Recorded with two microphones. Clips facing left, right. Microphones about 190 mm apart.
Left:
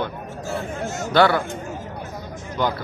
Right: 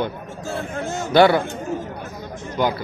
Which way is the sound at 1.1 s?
15° right (ahead or behind).